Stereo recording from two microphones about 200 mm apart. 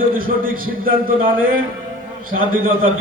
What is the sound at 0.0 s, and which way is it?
A man's voice, 45° right (ahead or behind).